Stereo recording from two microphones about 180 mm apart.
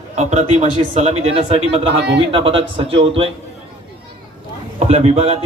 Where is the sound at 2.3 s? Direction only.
30° right (ahead or behind).